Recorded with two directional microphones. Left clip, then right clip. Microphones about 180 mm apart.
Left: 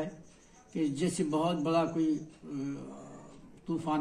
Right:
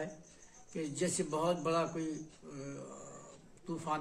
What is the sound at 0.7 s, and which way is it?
A man's voice, 20° right (ahead or behind).